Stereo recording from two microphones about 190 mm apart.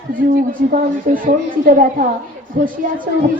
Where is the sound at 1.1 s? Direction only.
45° right (ahead or behind).